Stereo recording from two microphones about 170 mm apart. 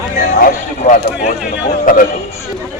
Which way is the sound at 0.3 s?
55° left (ahead or behind).